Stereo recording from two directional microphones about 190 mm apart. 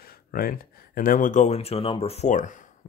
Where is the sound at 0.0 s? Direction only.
50° left (ahead or behind).